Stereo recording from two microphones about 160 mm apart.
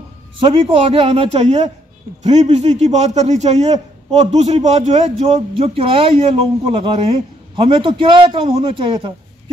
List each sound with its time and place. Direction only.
0.4 s a man's voice: 35° right (ahead or behind)